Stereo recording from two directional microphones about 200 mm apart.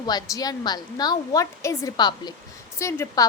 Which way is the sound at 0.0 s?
20° left (ahead or behind).